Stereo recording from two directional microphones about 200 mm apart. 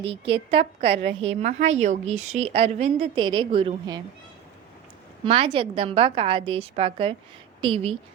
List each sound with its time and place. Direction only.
0.0 s a woman's voice: 25° right (ahead or behind)
5.2 s a woman's voice: 25° right (ahead or behind)